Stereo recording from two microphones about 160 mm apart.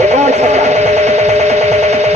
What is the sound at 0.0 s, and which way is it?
Radio, 45° right (ahead or behind).